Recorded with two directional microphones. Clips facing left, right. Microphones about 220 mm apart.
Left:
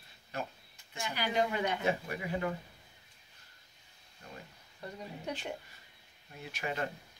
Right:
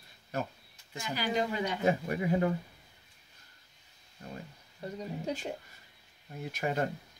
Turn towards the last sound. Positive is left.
turn(degrees=-40)  # may be behind; listen again after turning